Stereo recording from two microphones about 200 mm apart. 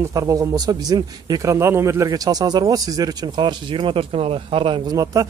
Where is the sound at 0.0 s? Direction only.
15° right (ahead or behind).